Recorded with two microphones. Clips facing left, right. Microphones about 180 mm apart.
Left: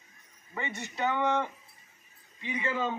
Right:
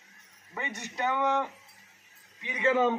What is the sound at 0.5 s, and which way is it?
Speech, 15° right (ahead or behind).